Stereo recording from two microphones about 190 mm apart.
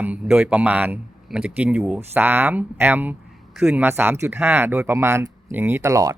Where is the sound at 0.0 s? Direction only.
10° right (ahead or behind).